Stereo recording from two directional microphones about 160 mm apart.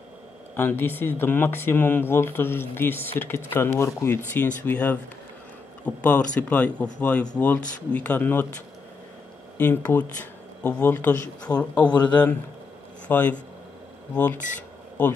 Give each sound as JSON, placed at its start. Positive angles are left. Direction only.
{"t": 0.6, "sound": "speech", "side_deg": 15}
{"t": 5.9, "sound": "speech", "side_deg": 10}
{"t": 9.6, "sound": "speech", "side_deg": 10}
{"t": 11.9, "sound": "speech", "side_deg": 25}
{"t": 13.1, "sound": "speech", "side_deg": 10}